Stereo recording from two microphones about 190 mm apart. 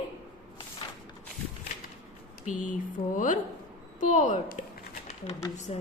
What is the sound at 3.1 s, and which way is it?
A woman's voice, 45° left (ahead or behind).